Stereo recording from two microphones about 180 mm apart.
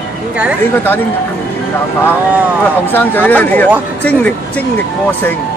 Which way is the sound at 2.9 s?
10° left (ahead or behind).